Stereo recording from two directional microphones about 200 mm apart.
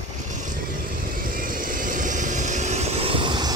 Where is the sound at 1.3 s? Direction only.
45° right (ahead or behind).